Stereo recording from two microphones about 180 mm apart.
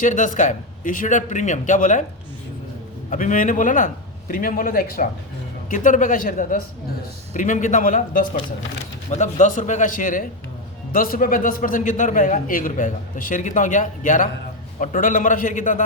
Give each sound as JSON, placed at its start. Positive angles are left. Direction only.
{"t": 0.0, "sound": "a man's voice", "side_deg": 45}
{"t": 3.1, "sound": "a man's voice", "side_deg": 45}